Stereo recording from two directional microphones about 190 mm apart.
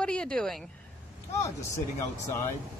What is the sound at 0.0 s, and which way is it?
Speech, 5° left (ahead or behind).